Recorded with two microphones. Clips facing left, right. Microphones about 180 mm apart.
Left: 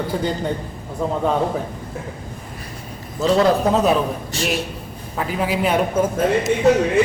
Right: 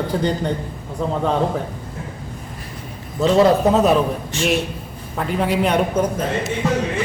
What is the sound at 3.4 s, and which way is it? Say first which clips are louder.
Speech: right 2 dB; centre (ahead or behind).